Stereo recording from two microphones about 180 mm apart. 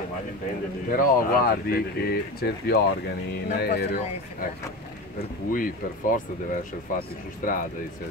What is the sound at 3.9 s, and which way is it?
Speech, 45° left (ahead or behind).